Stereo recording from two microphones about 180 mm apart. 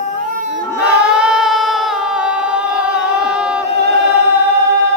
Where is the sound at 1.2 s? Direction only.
5° right (ahead or behind).